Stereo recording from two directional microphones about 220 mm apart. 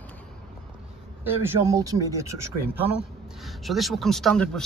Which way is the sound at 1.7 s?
15° right (ahead or behind).